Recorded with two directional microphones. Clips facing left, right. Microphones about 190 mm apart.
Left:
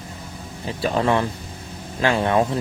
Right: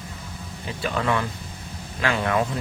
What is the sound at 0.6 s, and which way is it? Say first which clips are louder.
Speech: left 5 dB; 35° left (ahead or behind).